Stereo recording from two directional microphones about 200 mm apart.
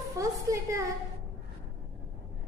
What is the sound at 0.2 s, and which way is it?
Speech, 15° right (ahead or behind).